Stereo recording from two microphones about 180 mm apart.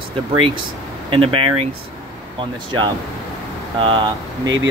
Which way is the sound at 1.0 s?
30° right (ahead or behind).